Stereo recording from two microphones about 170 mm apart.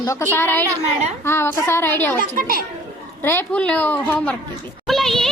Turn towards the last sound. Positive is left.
turn(degrees=0)  # may be behind; listen again after turning